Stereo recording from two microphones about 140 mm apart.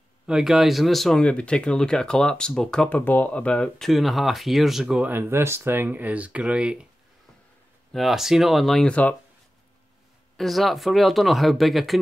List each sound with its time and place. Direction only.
0.3 s speech: 5° right (ahead or behind)
7.9 s speech: centre (ahead or behind)
10.3 s speech: centre (ahead or behind)